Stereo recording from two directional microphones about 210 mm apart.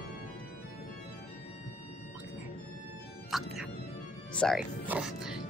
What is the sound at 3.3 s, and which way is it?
Music, centre (ahead or behind).